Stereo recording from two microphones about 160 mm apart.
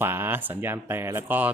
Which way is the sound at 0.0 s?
15° right (ahead or behind).